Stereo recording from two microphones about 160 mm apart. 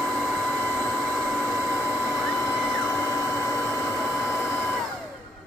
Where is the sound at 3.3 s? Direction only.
20° left (ahead or behind).